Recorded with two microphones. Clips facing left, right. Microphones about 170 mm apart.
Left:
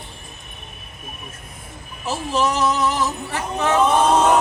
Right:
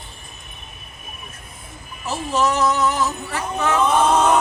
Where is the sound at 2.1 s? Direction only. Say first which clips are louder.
Even; 30° left (ahead or behind).